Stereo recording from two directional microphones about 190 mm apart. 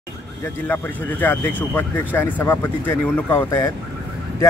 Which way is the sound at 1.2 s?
10° left (ahead or behind).